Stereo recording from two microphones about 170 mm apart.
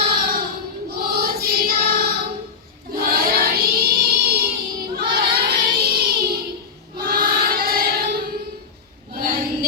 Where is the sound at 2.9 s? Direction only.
60° right (ahead or behind).